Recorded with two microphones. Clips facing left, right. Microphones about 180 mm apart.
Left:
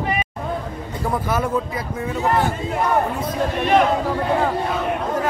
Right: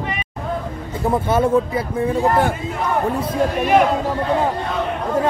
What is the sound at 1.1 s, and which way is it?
Speech, 25° right (ahead or behind).